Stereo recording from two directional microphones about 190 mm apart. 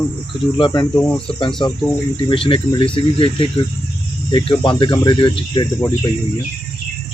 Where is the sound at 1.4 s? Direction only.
25° left (ahead or behind).